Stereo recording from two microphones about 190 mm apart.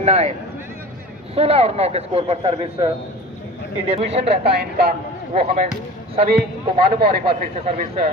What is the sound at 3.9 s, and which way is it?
Speech, 35° right (ahead or behind).